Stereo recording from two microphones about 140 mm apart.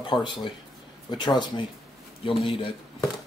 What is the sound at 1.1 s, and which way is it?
Speech, 30° left (ahead or behind).